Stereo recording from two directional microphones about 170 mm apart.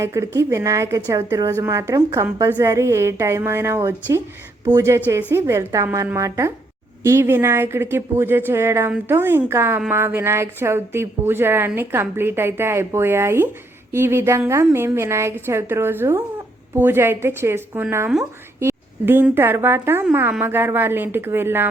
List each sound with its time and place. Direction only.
0.0 s a woman's voice: 15° right (ahead or behind)